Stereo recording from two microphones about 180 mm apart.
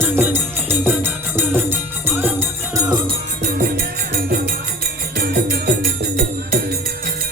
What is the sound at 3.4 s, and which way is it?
Music, 55° right (ahead or behind).